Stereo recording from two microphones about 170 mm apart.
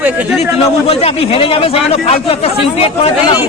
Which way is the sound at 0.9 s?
35° left (ahead or behind).